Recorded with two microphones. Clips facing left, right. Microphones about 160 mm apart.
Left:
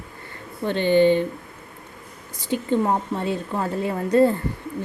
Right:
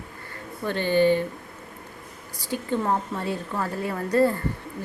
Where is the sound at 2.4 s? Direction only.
20° left (ahead or behind).